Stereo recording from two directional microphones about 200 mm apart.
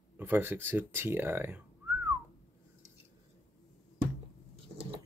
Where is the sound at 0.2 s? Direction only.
10° right (ahead or behind).